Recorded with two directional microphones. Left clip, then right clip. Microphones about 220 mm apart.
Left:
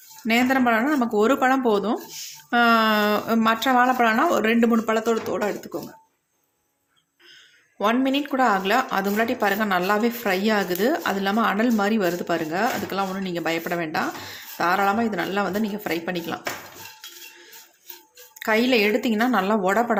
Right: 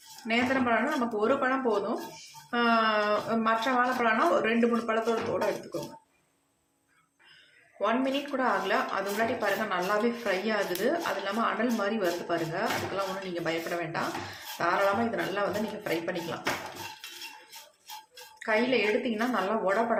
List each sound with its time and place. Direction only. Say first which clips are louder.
0.3 s a woman's voice: left 7 dB; 50° left (ahead or behind)
7.8 s a woman's voice: left 6 dB; 50° left (ahead or behind)
18.3 s a woman's voice: left 6 dB; 50° left (ahead or behind)